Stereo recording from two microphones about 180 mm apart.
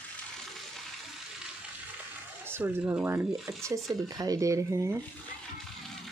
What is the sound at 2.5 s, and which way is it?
Speech, 10° right (ahead or behind).